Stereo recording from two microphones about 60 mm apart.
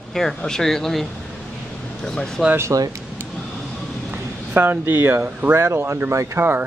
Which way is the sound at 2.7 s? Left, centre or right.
Right.